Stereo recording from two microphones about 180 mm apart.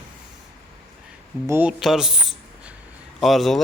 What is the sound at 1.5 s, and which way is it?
A man's voice, 10° right (ahead or behind).